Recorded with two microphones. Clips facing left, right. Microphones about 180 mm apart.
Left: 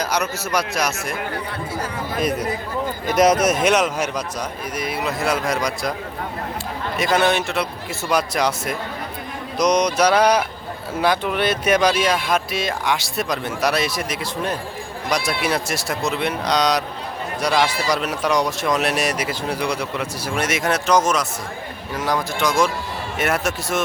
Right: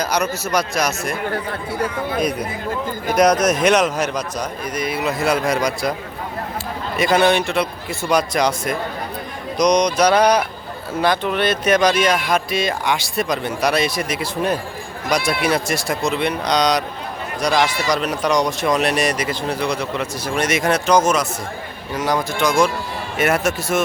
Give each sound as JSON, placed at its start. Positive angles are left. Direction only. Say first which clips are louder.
{"t": 0.0, "sound": "speech", "louder": "right 2 dB", "side_deg": 5}
{"t": 3.2, "sound": "speech", "louder": "right 1 dB", "side_deg": 5}
{"t": 6.9, "sound": "speech", "louder": "right 3 dB", "side_deg": 0}
{"t": 9.6, "sound": "mantra", "louder": "right 2 dB", "side_deg": 5}
{"t": 11.0, "sound": "speech", "louder": "right 1 dB", "side_deg": 10}